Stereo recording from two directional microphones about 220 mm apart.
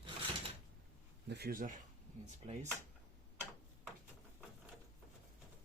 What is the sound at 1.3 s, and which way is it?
Speech, 45° right (ahead or behind).